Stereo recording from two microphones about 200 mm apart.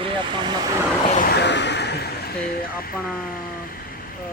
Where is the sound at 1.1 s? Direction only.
50° left (ahead or behind).